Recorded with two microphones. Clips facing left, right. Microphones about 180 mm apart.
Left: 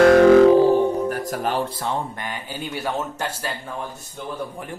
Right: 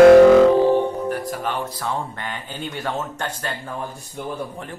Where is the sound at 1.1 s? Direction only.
40° left (ahead or behind); by 3.5 s 10° left (ahead or behind).